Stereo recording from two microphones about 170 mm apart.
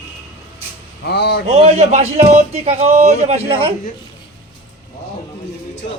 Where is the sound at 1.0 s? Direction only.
80° left.